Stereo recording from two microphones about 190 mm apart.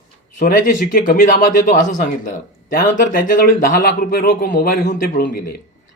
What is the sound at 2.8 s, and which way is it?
Speech, 45° left (ahead or behind).